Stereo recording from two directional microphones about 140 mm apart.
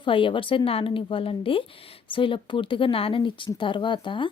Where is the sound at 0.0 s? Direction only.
40° left (ahead or behind).